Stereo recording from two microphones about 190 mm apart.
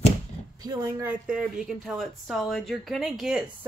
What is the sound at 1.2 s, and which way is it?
Speech, 5° right (ahead or behind).